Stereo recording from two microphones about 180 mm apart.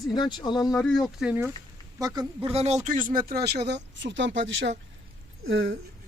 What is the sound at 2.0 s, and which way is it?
Speech, 20° right (ahead or behind).